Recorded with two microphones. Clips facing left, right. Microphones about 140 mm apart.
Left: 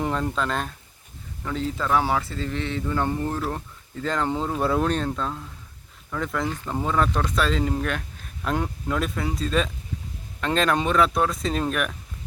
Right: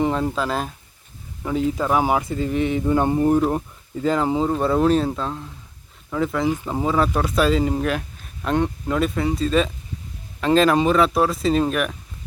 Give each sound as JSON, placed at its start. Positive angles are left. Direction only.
{"t": 0.0, "sound": "speech", "side_deg": -5}